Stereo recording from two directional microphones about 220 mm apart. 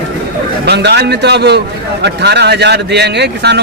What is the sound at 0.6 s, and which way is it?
A man's voice, 50° right (ahead or behind).